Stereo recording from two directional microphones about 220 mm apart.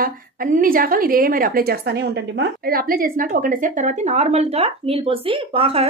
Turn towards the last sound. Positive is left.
turn(degrees=-25)  # may be behind; listen again after turning